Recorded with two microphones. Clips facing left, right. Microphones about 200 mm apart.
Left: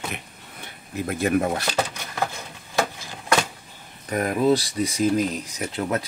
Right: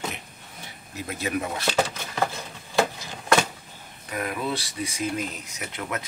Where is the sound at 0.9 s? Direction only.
50° left (ahead or behind).